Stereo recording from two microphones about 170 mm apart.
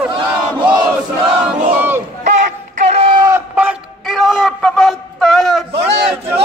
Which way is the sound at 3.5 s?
5° right (ahead or behind).